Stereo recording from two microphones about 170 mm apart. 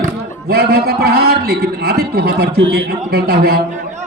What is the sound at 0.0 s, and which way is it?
A man's voice, 65° right (ahead or behind).